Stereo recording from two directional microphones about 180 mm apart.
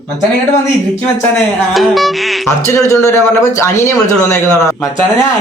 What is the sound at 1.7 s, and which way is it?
Speech, centre (ahead or behind).